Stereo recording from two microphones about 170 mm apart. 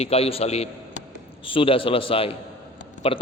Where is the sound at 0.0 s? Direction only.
35° left (ahead or behind).